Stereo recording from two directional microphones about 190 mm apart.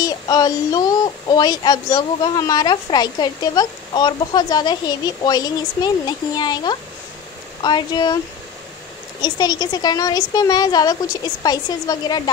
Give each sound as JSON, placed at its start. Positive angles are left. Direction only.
{"t": 0.0, "sound": "child singing", "side_deg": 20}
{"t": 9.2, "sound": "child singing", "side_deg": 20}